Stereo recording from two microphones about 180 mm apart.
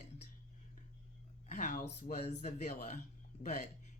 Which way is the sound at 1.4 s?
45° left (ahead or behind).